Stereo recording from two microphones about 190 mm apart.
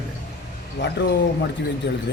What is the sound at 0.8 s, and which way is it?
Speech, 65° left (ahead or behind).